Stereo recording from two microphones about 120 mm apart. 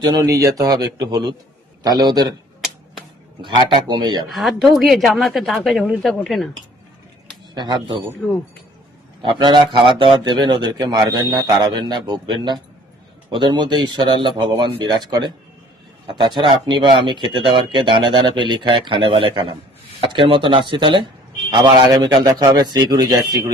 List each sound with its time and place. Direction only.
0.2 s speech: 25° right (ahead or behind)
3.9 s speech: 40° right (ahead or behind)
4.3 s a woman's voice: centre (ahead or behind)
7.5 s speech: 40° right (ahead or behind)
9.2 s speech: 40° right (ahead or behind)